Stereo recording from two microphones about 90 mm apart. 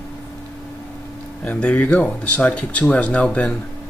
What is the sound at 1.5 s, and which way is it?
Speech, 15° left (ahead or behind).